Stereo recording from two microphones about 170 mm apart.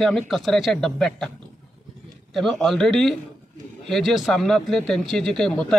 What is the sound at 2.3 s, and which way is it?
A man's voice, centre (ahead or behind).